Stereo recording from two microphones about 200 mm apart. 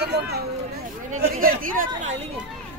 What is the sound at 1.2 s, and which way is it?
Speech, 45° right (ahead or behind).